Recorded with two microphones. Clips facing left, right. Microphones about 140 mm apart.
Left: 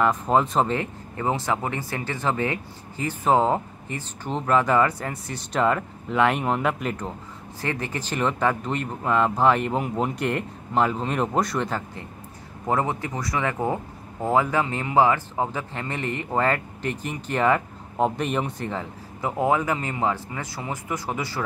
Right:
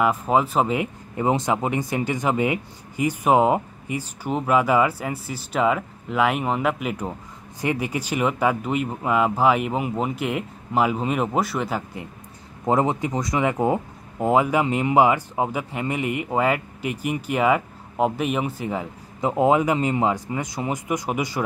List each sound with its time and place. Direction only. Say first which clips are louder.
0.0 s speech: right 1 dB; 5° right (ahead or behind)
19.2 s speech: right 4 dB; 20° right (ahead or behind)